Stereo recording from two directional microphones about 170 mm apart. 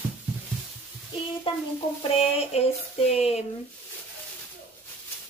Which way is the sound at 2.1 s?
35° left (ahead or behind).